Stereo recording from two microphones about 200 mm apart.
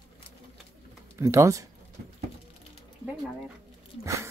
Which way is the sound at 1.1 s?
15° right (ahead or behind).